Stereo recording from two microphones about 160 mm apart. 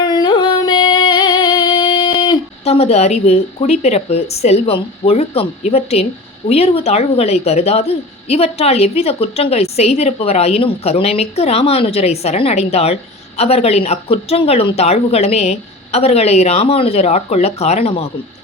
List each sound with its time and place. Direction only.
0.0 s music: 30° left (ahead or behind)
2.6 s a woman's voice: 40° left (ahead or behind)